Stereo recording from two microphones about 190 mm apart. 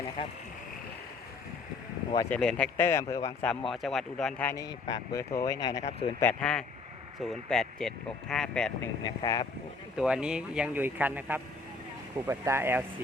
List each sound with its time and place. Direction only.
2.3 s speech: 5° left (ahead or behind)
3.7 s speech: centre (ahead or behind)
4.5 s speech: 20° left (ahead or behind)
5.8 s speech: 35° left (ahead or behind)
6.2 s speech: 5° left (ahead or behind)
8.8 s speech: 20° left (ahead or behind)
10.0 s speech: 5° right (ahead or behind)